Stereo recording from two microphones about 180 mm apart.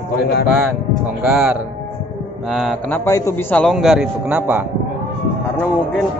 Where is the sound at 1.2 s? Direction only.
5° right (ahead or behind).